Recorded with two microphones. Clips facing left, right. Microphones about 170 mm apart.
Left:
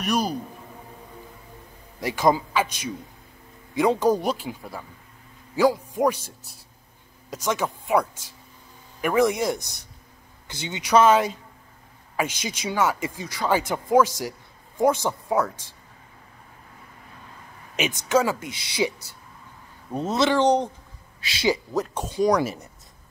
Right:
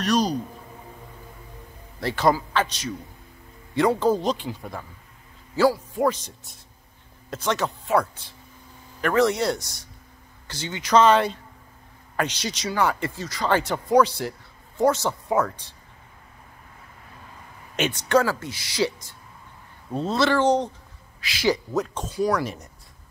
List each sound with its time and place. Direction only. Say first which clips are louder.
0.0 s speech: right 2 dB; 10° left (ahead or behind)
2.0 s speech: even; 15° left (ahead or behind)
5.6 s speech: even; 15° left (ahead or behind)
15.2 s speech: right 1 dB; centre (ahead or behind)
17.7 s speech: right 1 dB; 5° left (ahead or behind)
18.2 s speech: even; 15° left (ahead or behind)
21.2 s speech: even; 25° left (ahead or behind)
21.7 s speech: even; 5° left (ahead or behind)
22.1 s speech: left 3 dB; 20° left (ahead or behind)
22.4 s speech: left 3 dB; 5° left (ahead or behind)